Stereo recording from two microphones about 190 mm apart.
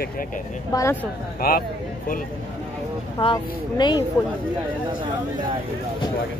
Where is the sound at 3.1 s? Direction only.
25° left (ahead or behind).